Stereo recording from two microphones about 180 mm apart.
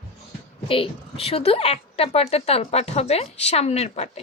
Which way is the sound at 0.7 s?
30° left (ahead or behind).